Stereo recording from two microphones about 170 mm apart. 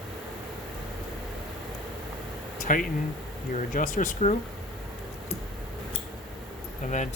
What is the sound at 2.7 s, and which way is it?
Speech, 50° left (ahead or behind).